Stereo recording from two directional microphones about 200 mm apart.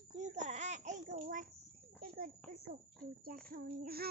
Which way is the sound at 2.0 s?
45° right (ahead or behind).